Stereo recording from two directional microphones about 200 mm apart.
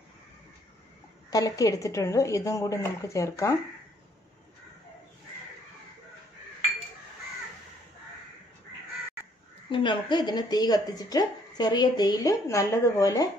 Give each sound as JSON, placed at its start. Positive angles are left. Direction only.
{"t": 1.3, "sound": "a woman's voice", "side_deg": 15}
{"t": 9.2, "sound": "speech", "side_deg": 25}